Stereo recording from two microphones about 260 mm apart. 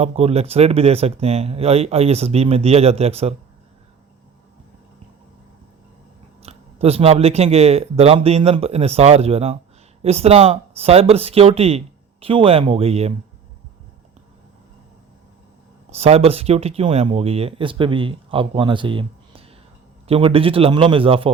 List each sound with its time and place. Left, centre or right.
0.0 s speech: right
6.4 s speech: right
15.9 s speech: right